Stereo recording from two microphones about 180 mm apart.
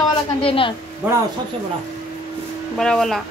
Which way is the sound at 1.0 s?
10° right (ahead or behind).